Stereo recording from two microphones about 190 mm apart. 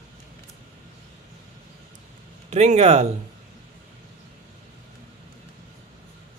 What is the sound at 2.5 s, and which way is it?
Speech, 35° right (ahead or behind).